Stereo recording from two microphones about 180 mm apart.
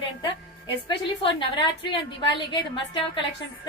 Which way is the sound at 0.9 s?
25° left (ahead or behind).